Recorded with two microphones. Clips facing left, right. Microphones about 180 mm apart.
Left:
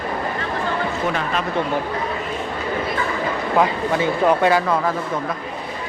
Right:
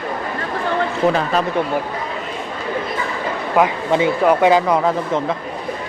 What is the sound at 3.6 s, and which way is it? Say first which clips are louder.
Speech: right 4 dB; 15° right (ahead or behind).